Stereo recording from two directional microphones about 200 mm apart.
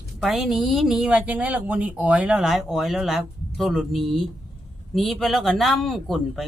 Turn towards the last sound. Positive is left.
turn(degrees=0)  # may be behind; listen again after turning